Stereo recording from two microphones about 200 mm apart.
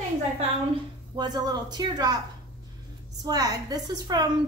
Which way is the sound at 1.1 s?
20° right (ahead or behind).